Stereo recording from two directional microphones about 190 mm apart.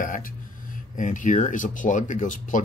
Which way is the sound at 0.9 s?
40° left (ahead or behind).